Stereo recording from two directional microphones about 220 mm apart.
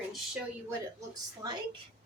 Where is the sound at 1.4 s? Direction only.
20° right (ahead or behind).